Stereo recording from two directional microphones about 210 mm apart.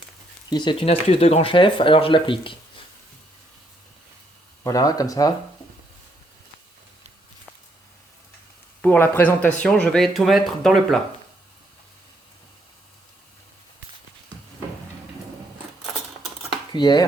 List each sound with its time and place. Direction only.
0.5 s speech: 20° left (ahead or behind)
4.6 s speech: 15° left (ahead or behind)
8.8 s speech: 10° left (ahead or behind)
16.7 s speech: 20° left (ahead or behind)